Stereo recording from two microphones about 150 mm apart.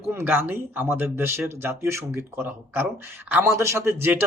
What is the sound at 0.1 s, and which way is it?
Speech, 15° right (ahead or behind).